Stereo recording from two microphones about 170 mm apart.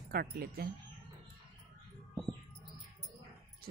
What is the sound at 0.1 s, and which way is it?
Speech, 65° right (ahead or behind).